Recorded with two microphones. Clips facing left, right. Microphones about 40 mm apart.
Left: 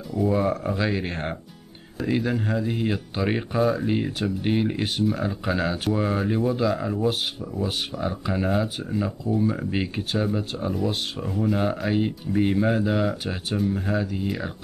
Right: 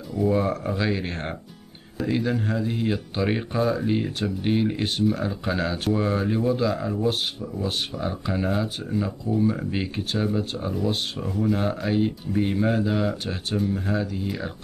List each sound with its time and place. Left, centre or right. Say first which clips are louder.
0.1 s speech: even; centre